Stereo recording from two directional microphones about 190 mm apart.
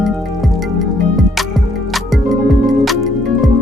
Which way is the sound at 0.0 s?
Centre (ahead or behind).